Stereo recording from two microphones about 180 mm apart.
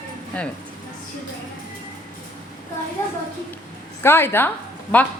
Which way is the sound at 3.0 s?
15° left (ahead or behind).